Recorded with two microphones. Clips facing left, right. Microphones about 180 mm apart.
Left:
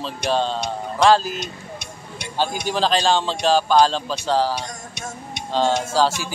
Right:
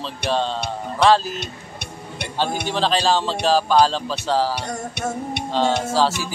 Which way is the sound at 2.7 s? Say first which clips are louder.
Left 1 dB; centre (ahead or behind).